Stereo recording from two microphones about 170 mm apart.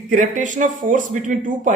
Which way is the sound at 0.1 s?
45° right (ahead or behind).